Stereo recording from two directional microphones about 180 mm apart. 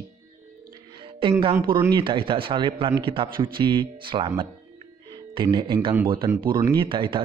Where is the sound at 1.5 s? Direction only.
20° right (ahead or behind).